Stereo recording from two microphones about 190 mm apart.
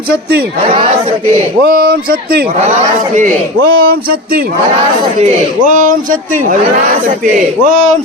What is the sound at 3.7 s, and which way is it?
A man's voice, 50° right (ahead or behind).